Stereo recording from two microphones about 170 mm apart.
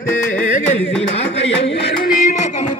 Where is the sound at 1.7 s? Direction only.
80° left.